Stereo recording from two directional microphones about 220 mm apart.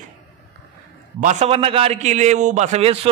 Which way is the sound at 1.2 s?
30° right (ahead or behind).